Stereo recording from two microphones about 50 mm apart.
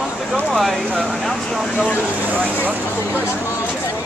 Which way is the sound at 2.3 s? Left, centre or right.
Right.